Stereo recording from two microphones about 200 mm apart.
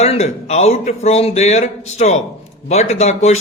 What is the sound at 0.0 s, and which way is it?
A man's voice, 30° left (ahead or behind).